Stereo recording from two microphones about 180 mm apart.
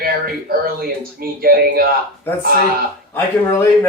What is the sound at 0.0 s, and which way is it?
Speech, 55° right (ahead or behind).